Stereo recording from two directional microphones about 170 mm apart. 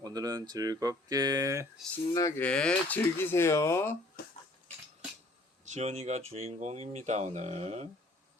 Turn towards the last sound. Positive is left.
turn(degrees=-40)  # may be behind; listen again after turning